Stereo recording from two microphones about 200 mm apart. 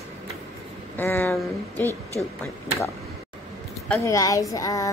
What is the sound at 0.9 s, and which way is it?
A woman's voice, 10° left (ahead or behind).